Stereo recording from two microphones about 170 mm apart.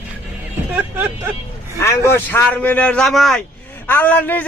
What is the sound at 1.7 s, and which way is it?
A man's voice, 15° left (ahead or behind).